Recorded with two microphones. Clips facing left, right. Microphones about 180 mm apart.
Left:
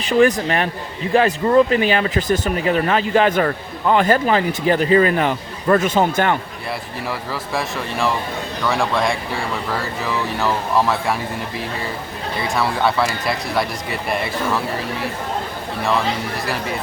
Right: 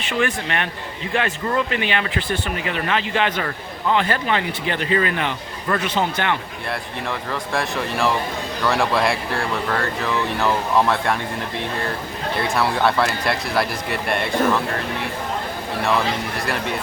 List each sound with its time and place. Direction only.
0.0 s speech: 35° left (ahead or behind)
6.7 s speech: centre (ahead or behind)
12.4 s speech: centre (ahead or behind)